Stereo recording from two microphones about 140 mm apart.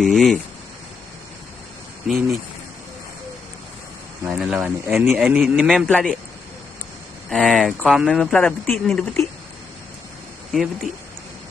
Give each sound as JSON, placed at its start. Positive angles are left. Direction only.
{"t": 0.0, "sound": "speech", "side_deg": 0}
{"t": 4.3, "sound": "speech", "side_deg": -5}
{"t": 4.8, "sound": "speech", "side_deg": -15}
{"t": 5.1, "sound": "speech", "side_deg": -5}
{"t": 5.9, "sound": "speech", "side_deg": 5}
{"t": 7.2, "sound": "speech", "side_deg": 0}
{"t": 10.5, "sound": "speech", "side_deg": 0}